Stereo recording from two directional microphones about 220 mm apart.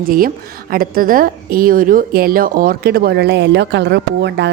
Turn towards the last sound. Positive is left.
turn(degrees=-50)  # may be behind; listen again after turning